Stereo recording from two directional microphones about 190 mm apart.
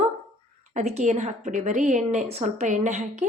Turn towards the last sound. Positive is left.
turn(degrees=-40)  # may be behind; listen again after turning